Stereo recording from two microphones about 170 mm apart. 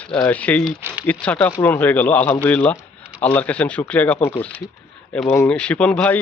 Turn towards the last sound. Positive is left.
turn(degrees=10)  # may be behind; listen again after turning